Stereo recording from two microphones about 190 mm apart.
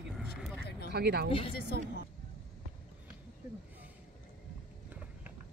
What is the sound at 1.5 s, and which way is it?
Speech, 55° left (ahead or behind).